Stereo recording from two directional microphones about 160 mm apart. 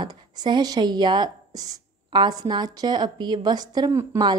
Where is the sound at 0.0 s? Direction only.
25° right (ahead or behind).